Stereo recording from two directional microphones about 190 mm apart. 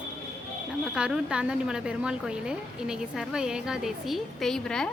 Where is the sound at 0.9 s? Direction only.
5° right (ahead or behind).